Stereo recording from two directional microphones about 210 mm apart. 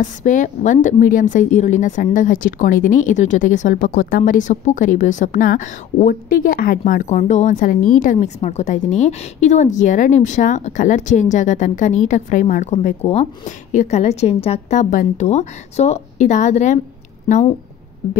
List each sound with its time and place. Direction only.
0.0 s a woman's voice: 35° left (ahead or behind)